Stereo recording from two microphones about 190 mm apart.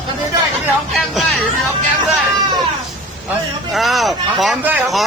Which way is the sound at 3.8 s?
Centre (ahead or behind).